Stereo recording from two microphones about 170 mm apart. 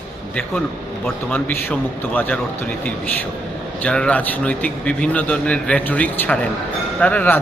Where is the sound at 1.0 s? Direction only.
10° left (ahead or behind).